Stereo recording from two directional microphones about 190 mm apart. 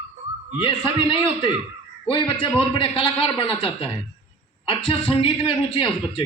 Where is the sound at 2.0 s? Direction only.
25° left (ahead or behind).